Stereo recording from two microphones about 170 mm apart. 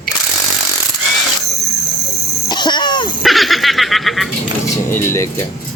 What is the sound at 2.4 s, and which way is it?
Cough, 25° left (ahead or behind).